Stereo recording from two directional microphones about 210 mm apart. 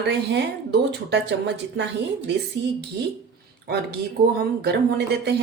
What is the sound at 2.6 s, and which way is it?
Speech, 55° right (ahead or behind).